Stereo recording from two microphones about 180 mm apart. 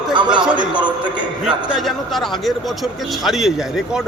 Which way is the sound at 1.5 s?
Centre (ahead or behind).